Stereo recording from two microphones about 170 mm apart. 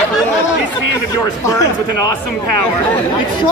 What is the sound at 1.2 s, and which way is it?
Speech, 20° left (ahead or behind).